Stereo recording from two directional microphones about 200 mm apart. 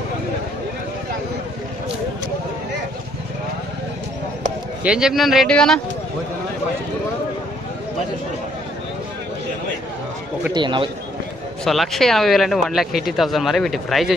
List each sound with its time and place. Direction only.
4.8 s speech: 5° right (ahead or behind)
10.5 s a man's voice: 25° right (ahead or behind)
11.6 s speech: centre (ahead or behind)